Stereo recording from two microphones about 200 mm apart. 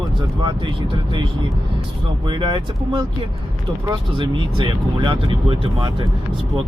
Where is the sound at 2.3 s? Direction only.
20° right (ahead or behind).